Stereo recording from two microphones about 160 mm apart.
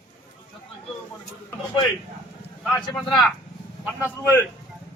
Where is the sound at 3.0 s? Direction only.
Centre (ahead or behind).